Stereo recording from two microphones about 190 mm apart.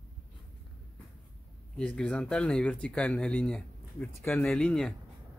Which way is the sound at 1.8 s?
5° left (ahead or behind).